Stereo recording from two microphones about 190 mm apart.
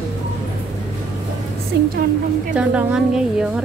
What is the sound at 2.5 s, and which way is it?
A woman's voice, 5° right (ahead or behind).